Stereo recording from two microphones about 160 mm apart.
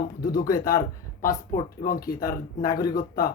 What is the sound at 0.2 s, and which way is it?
Speech, 65° left (ahead or behind).